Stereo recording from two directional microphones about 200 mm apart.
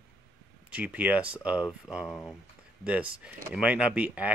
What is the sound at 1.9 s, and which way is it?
Speech, 15° left (ahead or behind).